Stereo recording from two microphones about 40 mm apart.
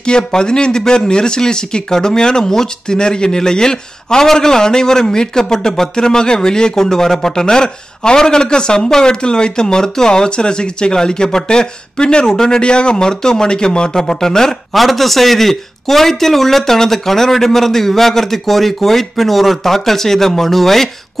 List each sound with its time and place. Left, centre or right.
0.0 s speech: left
14.7 s speech: centre